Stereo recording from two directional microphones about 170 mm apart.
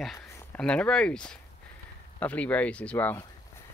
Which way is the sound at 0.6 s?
5° left (ahead or behind).